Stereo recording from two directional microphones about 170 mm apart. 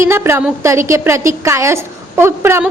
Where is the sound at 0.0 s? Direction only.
15° right (ahead or behind).